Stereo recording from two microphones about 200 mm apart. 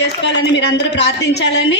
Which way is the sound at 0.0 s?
60° left (ahead or behind).